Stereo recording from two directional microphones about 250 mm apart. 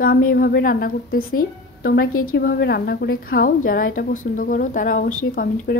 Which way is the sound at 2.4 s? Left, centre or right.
Left.